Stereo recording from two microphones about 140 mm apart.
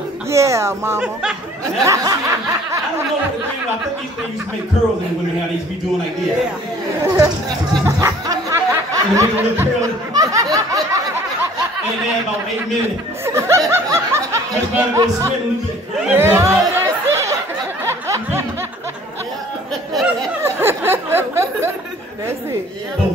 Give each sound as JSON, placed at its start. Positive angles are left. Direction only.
{"t": 0.3, "sound": "speech", "side_deg": -20}
{"t": 7.8, "sound": "a sound", "side_deg": -25}
{"t": 10.1, "sound": "speech", "side_deg": -25}
{"t": 13.2, "sound": "speech", "side_deg": -20}
{"t": 17.8, "sound": "music", "side_deg": -20}
{"t": 19.9, "sound": "speech", "side_deg": 0}
{"t": 20.4, "sound": "speech", "side_deg": -15}